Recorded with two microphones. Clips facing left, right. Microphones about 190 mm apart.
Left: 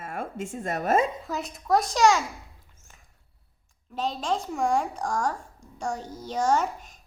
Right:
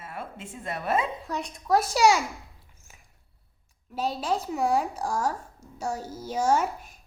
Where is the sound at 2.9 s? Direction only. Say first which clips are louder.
Even; 10° right (ahead or behind).